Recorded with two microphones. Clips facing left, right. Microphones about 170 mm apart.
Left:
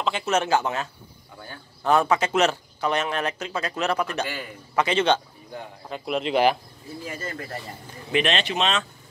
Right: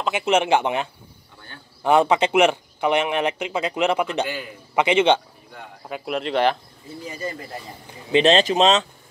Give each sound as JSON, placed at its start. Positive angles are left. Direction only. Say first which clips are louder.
{"t": 0.0, "sound": "speech", "louder": "right 4 dB", "side_deg": -10}
{"t": 5.9, "sound": "speech", "louder": "right 1 dB", "side_deg": -5}
{"t": 7.1, "sound": "speech", "louder": "right 4 dB", "side_deg": -15}
{"t": 8.1, "sound": "speech", "louder": "right 7 dB", "side_deg": -30}